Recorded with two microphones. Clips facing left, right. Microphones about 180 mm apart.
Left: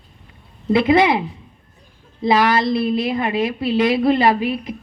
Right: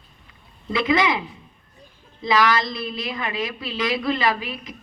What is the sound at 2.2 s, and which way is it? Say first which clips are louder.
A woman's voice: left 4 dB; 55° left (ahead or behind).